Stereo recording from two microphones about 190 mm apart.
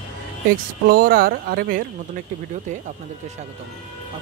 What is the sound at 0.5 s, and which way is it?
Speech, 50° right (ahead or behind).